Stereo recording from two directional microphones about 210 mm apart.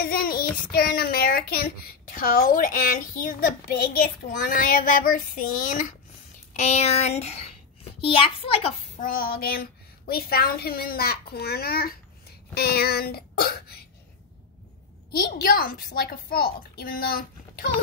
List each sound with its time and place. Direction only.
0.0 s child singing: 45° left (ahead or behind)
0.7 s a child's voice: 45° left (ahead or behind); by 8.7 s 25° left (ahead or behind)
9.0 s a child's voice: 45° left (ahead or behind)
15.0 s a child's voice: 45° left (ahead or behind)